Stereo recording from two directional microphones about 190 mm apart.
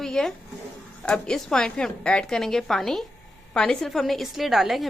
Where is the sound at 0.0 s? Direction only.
5° left (ahead or behind).